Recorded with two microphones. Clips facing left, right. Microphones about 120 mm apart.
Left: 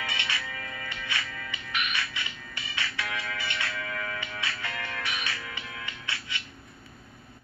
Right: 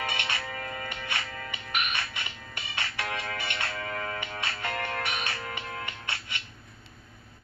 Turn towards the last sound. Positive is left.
turn(degrees=-50)  # may be behind; listen again after turning